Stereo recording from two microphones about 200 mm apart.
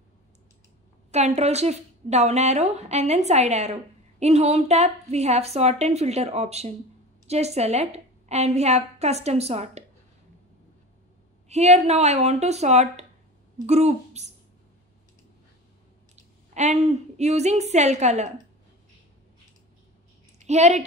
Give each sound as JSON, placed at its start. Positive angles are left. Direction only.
{"t": 1.1, "sound": "a woman's voice", "side_deg": -35}
{"t": 11.4, "sound": "a woman's voice", "side_deg": -35}
{"t": 16.5, "sound": "a woman's voice", "side_deg": -35}
{"t": 20.4, "sound": "a woman's voice", "side_deg": -35}